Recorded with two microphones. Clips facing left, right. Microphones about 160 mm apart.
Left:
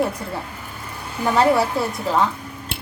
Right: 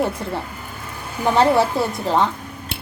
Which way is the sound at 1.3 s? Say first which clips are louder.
Right 1 dB; 25° right (ahead or behind).